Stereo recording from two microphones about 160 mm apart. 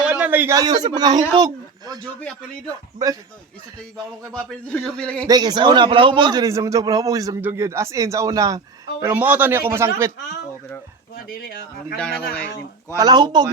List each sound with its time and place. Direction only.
0.0 s speech: 10° right (ahead or behind); by 2.0 s 25° right (ahead or behind)
4.3 s a man's voice: 5° left (ahead or behind)
5.2 s a man's voice: 25° right (ahead or behind)
11.4 s speech: 70° left (ahead or behind)
11.9 s a man's voice: 5° left (ahead or behind)
13.0 s a man's voice: 25° right (ahead or behind)